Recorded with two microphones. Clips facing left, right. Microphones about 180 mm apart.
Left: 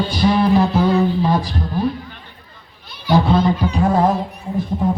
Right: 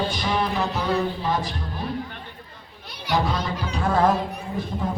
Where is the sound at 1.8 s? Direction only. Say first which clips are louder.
Left 12 dB; 35° left (ahead or behind).